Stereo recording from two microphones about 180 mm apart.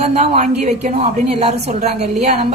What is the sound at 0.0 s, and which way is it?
A woman's voice, 40° right (ahead or behind).